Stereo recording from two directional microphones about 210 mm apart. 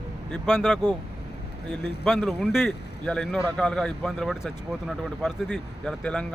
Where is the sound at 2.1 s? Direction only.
Centre (ahead or behind).